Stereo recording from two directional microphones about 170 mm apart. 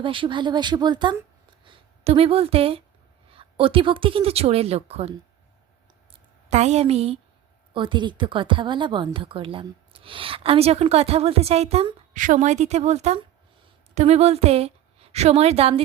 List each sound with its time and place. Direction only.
0.0 s a woman's voice: 30° right (ahead or behind)
6.5 s a woman's voice: 40° right (ahead or behind)
12.2 s a woman's voice: 45° right (ahead or behind)